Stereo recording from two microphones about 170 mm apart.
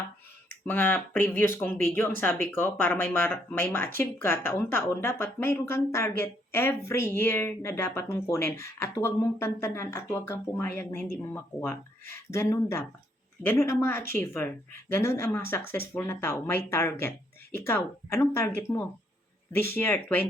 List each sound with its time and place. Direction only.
0.6 s speech: 10° left (ahead or behind)